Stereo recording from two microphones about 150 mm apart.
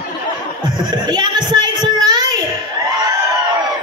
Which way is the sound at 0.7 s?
30° right (ahead or behind).